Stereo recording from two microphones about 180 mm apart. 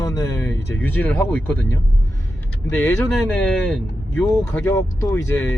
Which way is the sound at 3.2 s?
5° left (ahead or behind).